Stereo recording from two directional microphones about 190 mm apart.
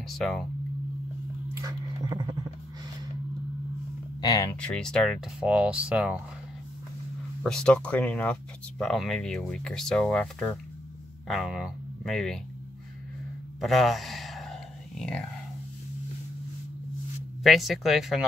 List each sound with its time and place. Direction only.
0.1 s speech: centre (ahead or behind)
1.5 s a sound: 20° right (ahead or behind)
4.2 s speech: 20° left (ahead or behind)
4.6 s speech: 5° left (ahead or behind)
7.4 s speech: 5° left (ahead or behind)
13.6 s whispering: centre (ahead or behind)
17.4 s speech: centre (ahead or behind)